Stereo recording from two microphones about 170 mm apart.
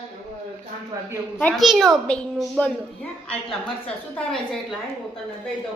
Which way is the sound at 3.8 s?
5° left (ahead or behind).